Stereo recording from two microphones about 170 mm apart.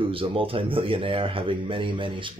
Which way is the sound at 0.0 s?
30° right (ahead or behind).